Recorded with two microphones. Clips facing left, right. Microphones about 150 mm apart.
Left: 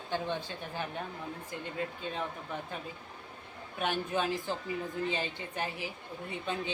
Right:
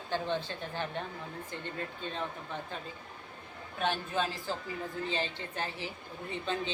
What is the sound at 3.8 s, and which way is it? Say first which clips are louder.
A woman's voice: even; 15° left (ahead or behind).